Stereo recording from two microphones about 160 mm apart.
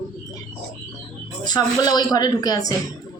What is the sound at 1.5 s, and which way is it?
A woman's voice, 25° left (ahead or behind).